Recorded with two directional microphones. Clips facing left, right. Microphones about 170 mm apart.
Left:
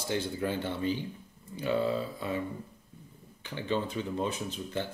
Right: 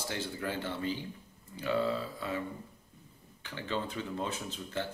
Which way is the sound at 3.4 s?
15° left (ahead or behind).